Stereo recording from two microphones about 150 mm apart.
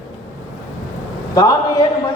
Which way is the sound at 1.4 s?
25° left (ahead or behind).